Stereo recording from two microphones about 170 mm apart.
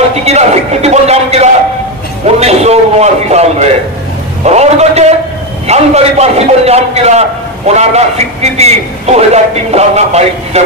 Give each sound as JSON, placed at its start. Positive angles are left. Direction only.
{"t": 0.1, "sound": "a man's voice", "side_deg": -40}